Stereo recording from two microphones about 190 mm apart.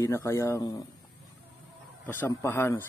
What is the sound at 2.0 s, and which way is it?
Speech, 10° left (ahead or behind).